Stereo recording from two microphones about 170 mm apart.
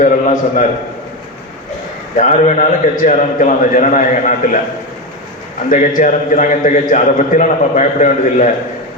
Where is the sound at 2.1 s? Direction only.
50° left (ahead or behind).